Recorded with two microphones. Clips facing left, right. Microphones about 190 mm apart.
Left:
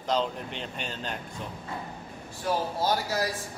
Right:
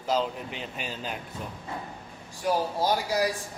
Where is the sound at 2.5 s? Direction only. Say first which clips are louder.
Right 2 dB; 10° right (ahead or behind).